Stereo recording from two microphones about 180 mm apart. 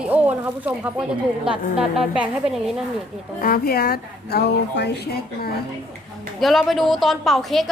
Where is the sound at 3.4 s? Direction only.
55° left (ahead or behind).